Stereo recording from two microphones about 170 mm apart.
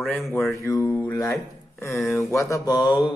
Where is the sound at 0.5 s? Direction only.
20° left (ahead or behind).